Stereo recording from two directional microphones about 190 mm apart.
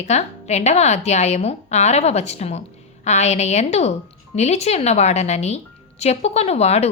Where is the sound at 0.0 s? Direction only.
35° left (ahead or behind).